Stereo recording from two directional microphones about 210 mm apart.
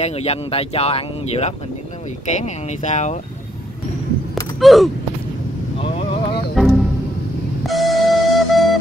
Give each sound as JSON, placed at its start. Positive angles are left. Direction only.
{"t": 0.0, "sound": "speech", "side_deg": 30}
{"t": 4.6, "sound": "gasp", "side_deg": 0}
{"t": 5.8, "sound": "vehicle", "side_deg": 25}
{"t": 6.5, "sound": "music", "side_deg": 0}